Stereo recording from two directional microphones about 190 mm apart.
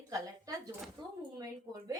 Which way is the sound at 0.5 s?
15° right (ahead or behind).